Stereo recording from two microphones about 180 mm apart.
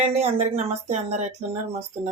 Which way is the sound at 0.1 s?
35° right (ahead or behind).